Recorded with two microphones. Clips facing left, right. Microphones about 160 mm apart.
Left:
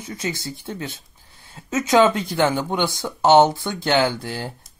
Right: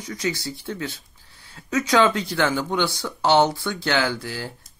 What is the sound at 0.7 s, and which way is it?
Speech, 25° left (ahead or behind).